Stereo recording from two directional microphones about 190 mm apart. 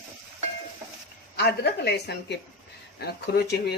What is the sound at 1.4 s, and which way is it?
Speech, 60° left (ahead or behind).